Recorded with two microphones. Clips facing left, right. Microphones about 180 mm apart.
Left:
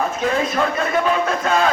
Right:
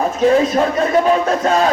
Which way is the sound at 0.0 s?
35° right (ahead or behind).